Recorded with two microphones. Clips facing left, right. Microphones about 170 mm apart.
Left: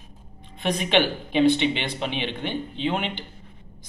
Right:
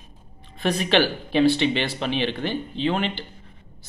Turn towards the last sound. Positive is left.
turn(degrees=15)  # may be behind; listen again after turning